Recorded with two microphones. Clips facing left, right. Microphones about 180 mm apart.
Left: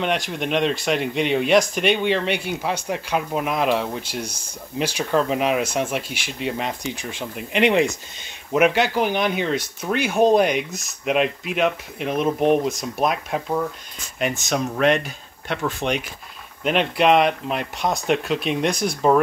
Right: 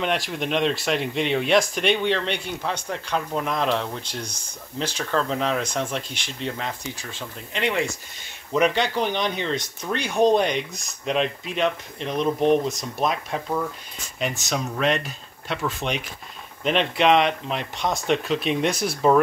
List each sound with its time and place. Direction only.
0.0 s speech: centre (ahead or behind)
6.5 s speech: 20° left (ahead or behind)
8.5 s speech: 5° left (ahead or behind)